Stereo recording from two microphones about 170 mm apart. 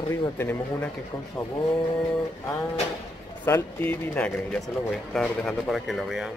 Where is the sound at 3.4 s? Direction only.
10° left (ahead or behind).